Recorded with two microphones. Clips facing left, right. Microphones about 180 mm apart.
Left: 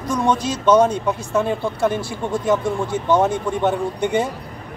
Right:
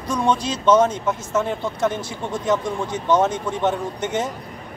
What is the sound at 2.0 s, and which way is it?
Speech, 20° right (ahead or behind).